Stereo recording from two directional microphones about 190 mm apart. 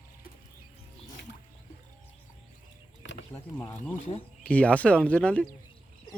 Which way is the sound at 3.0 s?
70° left (ahead or behind).